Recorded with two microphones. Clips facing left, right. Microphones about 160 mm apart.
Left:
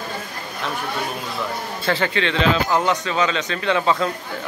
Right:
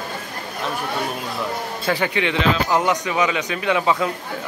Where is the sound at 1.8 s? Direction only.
15° right (ahead or behind).